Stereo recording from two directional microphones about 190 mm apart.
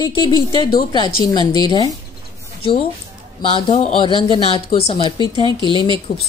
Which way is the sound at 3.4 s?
25° left (ahead or behind).